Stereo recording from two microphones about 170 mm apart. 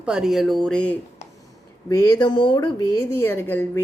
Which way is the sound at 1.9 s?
25° left (ahead or behind).